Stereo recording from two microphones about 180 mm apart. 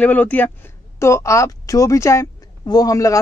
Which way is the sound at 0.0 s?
10° left (ahead or behind).